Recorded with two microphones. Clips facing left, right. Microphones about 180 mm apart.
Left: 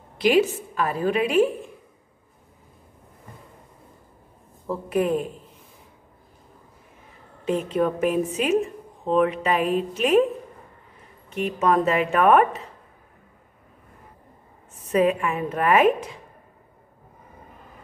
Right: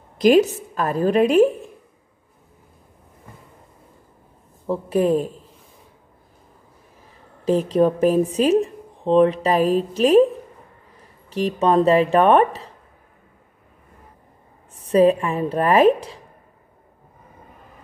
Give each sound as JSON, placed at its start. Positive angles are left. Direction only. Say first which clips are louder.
{"t": 0.2, "sound": "speech", "louder": "right 5 dB", "side_deg": -40}
{"t": 4.6, "sound": "speech", "louder": "right 4 dB", "side_deg": -30}
{"t": 7.4, "sound": "speech", "louder": "right 5 dB", "side_deg": -35}
{"t": 11.2, "sound": "speech", "louder": "right 3 dB", "side_deg": -35}
{"t": 14.8, "sound": "speech", "louder": "right 5 dB", "side_deg": -30}